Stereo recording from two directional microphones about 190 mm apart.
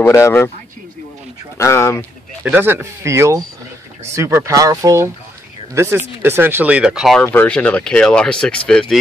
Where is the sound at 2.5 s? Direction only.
10° right (ahead or behind).